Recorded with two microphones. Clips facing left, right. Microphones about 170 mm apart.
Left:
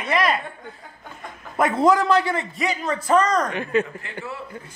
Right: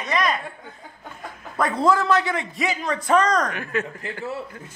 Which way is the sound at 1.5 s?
20° left (ahead or behind).